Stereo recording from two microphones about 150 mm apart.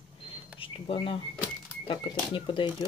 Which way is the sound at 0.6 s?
40° left (ahead or behind).